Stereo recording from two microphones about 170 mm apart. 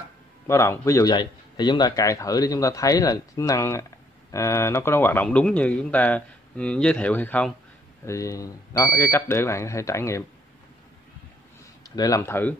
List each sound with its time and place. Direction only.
0.5 s a man's voice: 15° left (ahead or behind)
11.9 s a man's voice: 20° left (ahead or behind)